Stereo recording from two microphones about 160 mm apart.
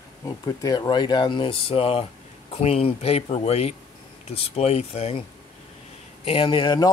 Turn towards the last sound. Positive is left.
turn(degrees=30)  # may be behind; listen again after turning